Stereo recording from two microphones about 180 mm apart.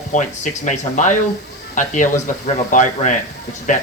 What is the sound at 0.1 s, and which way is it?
Speech, 40° left (ahead or behind).